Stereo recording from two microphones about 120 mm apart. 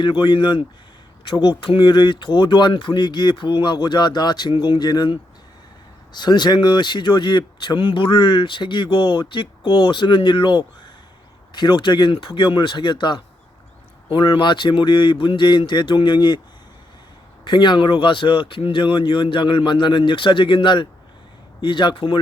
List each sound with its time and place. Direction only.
0.0 s speech: 40° left (ahead or behind)
17.4 s speech: 40° left (ahead or behind)